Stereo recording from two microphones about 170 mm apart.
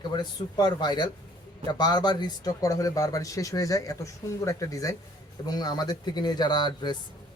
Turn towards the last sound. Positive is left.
turn(degrees=25)  # may be behind; listen again after turning